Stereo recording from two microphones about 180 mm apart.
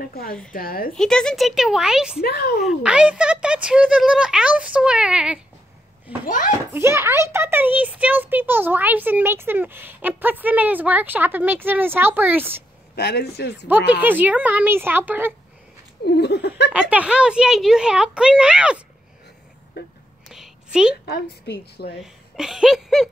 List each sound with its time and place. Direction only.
0.5 s a woman's voice: 55° left (ahead or behind)
0.9 s speech: 5° left (ahead or behind)
2.2 s a woman's voice: 60° left (ahead or behind)
2.6 s speech: 5° right (ahead or behind)
6.2 s a child's voice: 45° left (ahead or behind)
6.7 s speech: 15° right (ahead or behind)
12.9 s a woman's voice: 65° left (ahead or behind)
13.9 s speech: 10° right (ahead or behind)
16.1 s a sound: 70° left (ahead or behind)
16.9 s speech: 5° right (ahead or behind)
19.7 s speech: 75° left (ahead or behind)
20.2 s a sound: centre (ahead or behind)
21.0 s a woman's voice: 65° left (ahead or behind)
22.0 s a woman's voice: 5° right (ahead or behind)